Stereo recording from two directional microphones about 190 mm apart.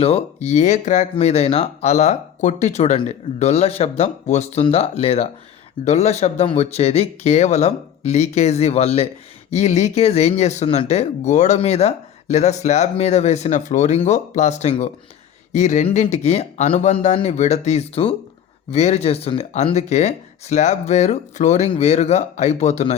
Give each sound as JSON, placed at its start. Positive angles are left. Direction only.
{"t": 0.0, "sound": "speech", "side_deg": 35}